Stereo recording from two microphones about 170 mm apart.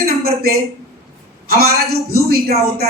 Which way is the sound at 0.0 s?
65° right (ahead or behind).